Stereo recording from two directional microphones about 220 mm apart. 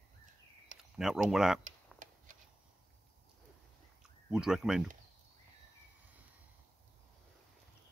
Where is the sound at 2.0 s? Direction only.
35° right (ahead or behind).